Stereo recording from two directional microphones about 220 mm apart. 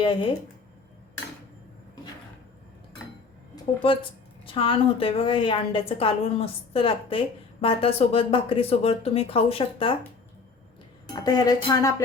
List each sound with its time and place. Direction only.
0.0 s a woman's voice: 20° left (ahead or behind)
4.4 s a woman's voice: 25° left (ahead or behind)
11.1 s music: 20° left (ahead or behind)